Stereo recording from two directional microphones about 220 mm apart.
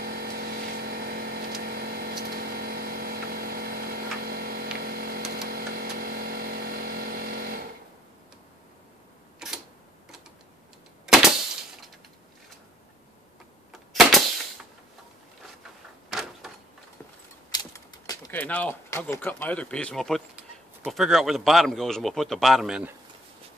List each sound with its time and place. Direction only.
0.0 s vehicle: 45° right (ahead or behind)
9.4 s camera: centre (ahead or behind)
13.7 s typewriter: centre (ahead or behind)
16.1 s a sound: centre (ahead or behind)
17.5 s speech: 15° left (ahead or behind); by 22.9 s 5° right (ahead or behind)